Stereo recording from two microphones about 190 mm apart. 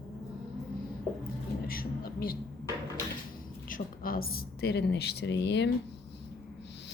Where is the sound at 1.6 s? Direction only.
50° left (ahead or behind).